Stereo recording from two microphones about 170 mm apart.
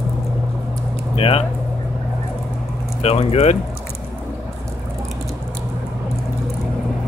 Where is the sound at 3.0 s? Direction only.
35° left (ahead or behind).